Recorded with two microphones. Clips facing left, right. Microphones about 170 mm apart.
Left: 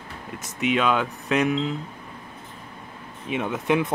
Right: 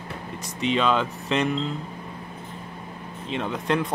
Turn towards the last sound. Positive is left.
turn(degrees=10)  # may be behind; listen again after turning